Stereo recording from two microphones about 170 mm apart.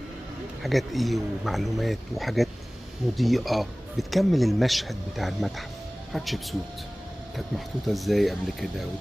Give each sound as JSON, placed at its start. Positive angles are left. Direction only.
{"t": 0.6, "sound": "speech", "side_deg": 0}